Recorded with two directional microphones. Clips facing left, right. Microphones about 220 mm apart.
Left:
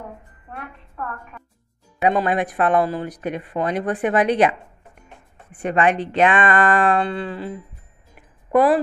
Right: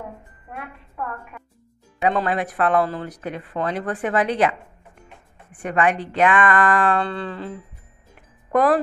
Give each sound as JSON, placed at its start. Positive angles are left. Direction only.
{"t": 2.0, "sound": "speech", "side_deg": 15}
{"t": 5.6, "sound": "speech", "side_deg": 25}